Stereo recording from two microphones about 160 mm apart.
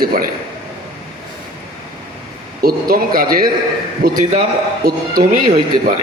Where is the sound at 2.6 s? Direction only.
65° right (ahead or behind).